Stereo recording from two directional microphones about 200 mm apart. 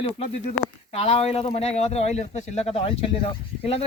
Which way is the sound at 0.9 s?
30° left (ahead or behind).